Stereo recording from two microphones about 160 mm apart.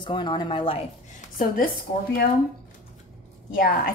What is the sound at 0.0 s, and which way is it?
Speech, 30° left (ahead or behind).